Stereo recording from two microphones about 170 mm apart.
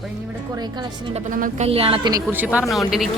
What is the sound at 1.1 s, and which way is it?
Speech, 50° right (ahead or behind).